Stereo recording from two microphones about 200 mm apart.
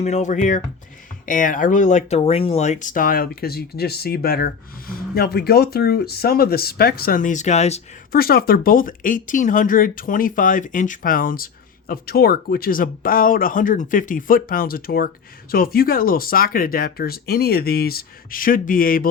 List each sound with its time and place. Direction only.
0.0 s speech: 35° left (ahead or behind)
8.1 s speech: 50° left (ahead or behind)